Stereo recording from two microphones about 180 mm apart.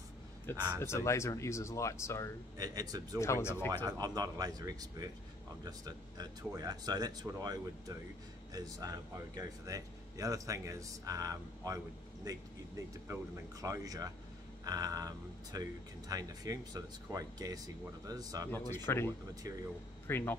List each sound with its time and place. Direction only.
0.7 s speech: 15° left (ahead or behind)
2.5 s speech: 20° right (ahead or behind)
3.2 s speech: 15° left (ahead or behind)
3.7 s speech: 20° right (ahead or behind)
13.1 s speech: 20° right (ahead or behind)
18.7 s speech: 15° left (ahead or behind)